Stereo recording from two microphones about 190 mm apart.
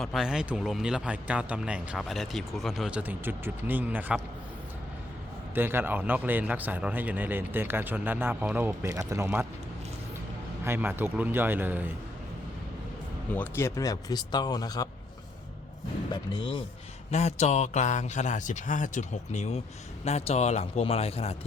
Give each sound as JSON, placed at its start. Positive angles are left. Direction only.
{"t": 0.0, "sound": "a man's voice", "side_deg": 0}
{"t": 5.5, "sound": "a man's voice", "side_deg": -10}
{"t": 10.6, "sound": "a man's voice", "side_deg": -10}
{"t": 13.3, "sound": "speech", "side_deg": 10}
{"t": 16.1, "sound": "speech", "side_deg": 25}
{"t": 17.1, "sound": "a man's voice", "side_deg": 35}